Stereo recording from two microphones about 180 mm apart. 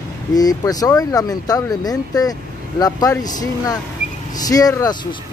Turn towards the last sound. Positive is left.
turn(degrees=20)  # may be behind; listen again after turning